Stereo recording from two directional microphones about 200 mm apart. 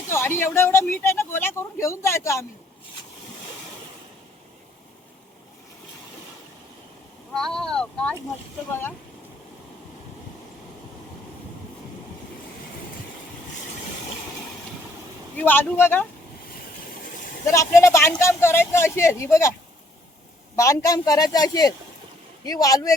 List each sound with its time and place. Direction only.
0.1 s speech: 10° left (ahead or behind)
7.3 s speech: 5° left (ahead or behind)
15.4 s speech: 10° left (ahead or behind)
17.5 s speech: 15° left (ahead or behind)
20.6 s speech: 15° left (ahead or behind)